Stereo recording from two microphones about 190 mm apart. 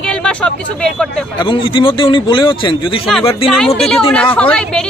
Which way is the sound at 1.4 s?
25° left (ahead or behind).